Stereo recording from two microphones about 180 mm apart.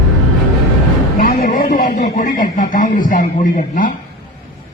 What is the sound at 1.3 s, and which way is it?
A man's voice, 50° left (ahead or behind).